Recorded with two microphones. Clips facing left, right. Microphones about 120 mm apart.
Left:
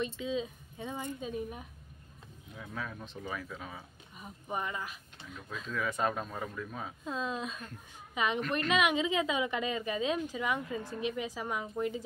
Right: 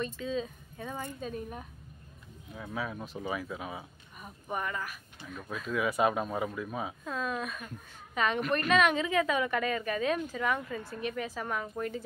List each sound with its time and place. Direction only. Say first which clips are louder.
0.0 s a woman's voice: even; 15° left (ahead or behind)
2.5 s speech: right 4 dB; 5° right (ahead or behind)
4.5 s speech: right 2 dB; 20° left (ahead or behind)
5.3 s speech: right 5 dB; 10° right (ahead or behind)
7.1 s a woman's voice: left 1 dB; 20° left (ahead or behind)